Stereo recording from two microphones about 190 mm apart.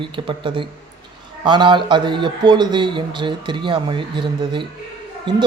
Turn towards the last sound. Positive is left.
turn(degrees=-25)  # may be behind; listen again after turning